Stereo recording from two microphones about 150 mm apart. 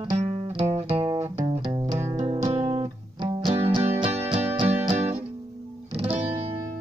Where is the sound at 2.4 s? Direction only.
20° right (ahead or behind).